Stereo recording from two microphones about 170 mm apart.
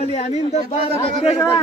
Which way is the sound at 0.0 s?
40° left (ahead or behind).